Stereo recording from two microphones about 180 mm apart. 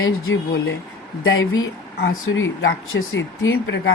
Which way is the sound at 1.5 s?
75° left (ahead or behind).